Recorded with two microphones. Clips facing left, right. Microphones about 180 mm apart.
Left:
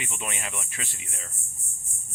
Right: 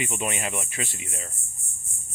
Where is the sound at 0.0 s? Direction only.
10° right (ahead or behind).